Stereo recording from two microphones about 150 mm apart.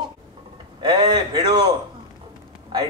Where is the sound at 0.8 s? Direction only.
30° right (ahead or behind).